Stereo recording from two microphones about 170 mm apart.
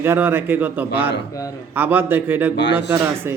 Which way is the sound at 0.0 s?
15° right (ahead or behind).